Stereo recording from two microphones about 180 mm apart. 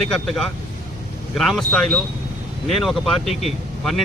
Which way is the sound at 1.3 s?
Centre (ahead or behind).